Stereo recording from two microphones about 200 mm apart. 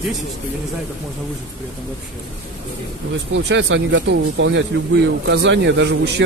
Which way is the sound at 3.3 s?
65° right (ahead or behind).